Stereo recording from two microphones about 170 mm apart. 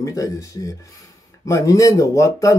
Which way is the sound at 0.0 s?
20° left (ahead or behind).